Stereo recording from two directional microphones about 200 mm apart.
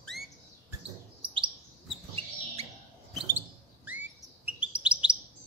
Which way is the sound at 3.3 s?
10° right (ahead or behind).